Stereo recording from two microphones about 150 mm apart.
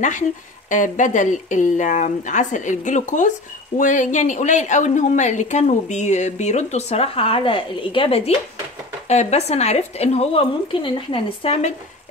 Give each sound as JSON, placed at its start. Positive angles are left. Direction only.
{"t": 0.7, "sound": "speech", "side_deg": 55}